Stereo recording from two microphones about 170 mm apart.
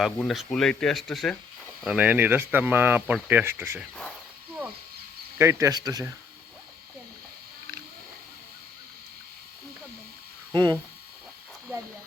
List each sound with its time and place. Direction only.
0.0 s speech: centre (ahead or behind)
5.4 s speech: 15° right (ahead or behind)
10.5 s speech: 25° right (ahead or behind)